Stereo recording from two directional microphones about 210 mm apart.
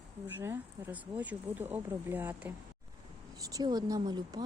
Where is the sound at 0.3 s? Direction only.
10° right (ahead or behind).